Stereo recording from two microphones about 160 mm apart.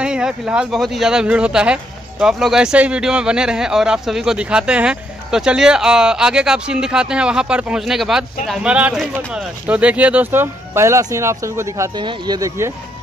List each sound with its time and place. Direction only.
0.0 s speech: 5° right (ahead or behind)